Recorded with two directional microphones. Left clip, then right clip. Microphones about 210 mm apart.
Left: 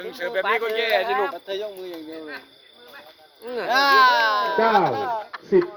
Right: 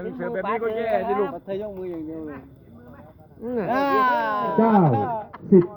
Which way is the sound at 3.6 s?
25° right (ahead or behind).